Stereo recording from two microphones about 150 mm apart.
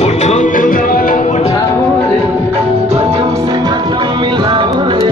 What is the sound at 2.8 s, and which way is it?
Music, 45° right (ahead or behind).